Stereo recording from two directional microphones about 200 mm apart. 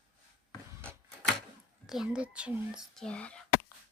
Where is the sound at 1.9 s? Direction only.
5° right (ahead or behind).